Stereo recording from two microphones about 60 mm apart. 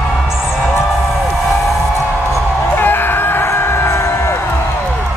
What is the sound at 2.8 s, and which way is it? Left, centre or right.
Chicken, left.